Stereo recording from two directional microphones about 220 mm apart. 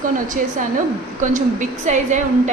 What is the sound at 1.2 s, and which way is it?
A woman's voice, 35° right (ahead or behind).